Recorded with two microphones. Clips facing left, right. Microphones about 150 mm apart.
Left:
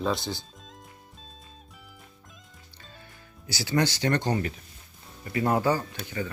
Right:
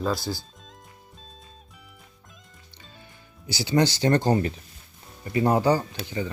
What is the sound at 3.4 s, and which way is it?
Speech, 25° right (ahead or behind).